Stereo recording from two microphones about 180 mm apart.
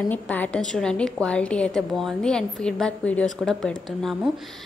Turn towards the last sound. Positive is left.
turn(degrees=5)  # may be behind; listen again after turning